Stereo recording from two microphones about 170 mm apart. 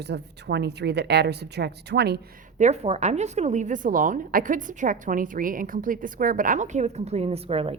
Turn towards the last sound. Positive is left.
turn(degrees=-35)  # may be behind; listen again after turning